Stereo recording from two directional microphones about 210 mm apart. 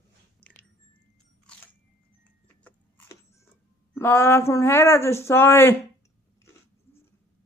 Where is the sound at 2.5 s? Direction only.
10° left (ahead or behind).